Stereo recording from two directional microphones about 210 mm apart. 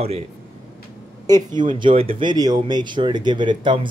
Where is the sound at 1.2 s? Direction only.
20° right (ahead or behind).